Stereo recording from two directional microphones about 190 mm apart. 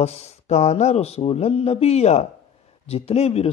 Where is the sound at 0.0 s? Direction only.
35° left (ahead or behind).